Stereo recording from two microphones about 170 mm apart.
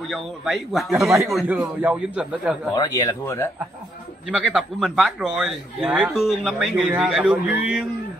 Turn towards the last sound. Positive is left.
turn(degrees=-5)  # may be behind; listen again after turning